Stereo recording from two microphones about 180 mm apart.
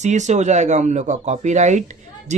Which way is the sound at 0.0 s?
40° right (ahead or behind).